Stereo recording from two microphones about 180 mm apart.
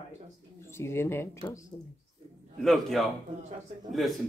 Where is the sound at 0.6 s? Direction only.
15° left (ahead or behind).